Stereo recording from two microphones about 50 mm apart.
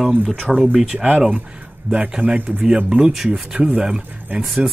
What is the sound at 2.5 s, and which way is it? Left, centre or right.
Speech, centre.